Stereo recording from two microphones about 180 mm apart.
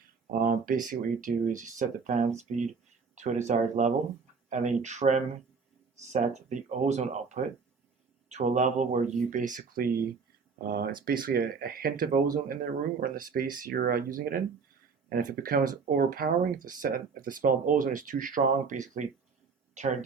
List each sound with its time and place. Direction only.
0.3 s speech: 50° right (ahead or behind)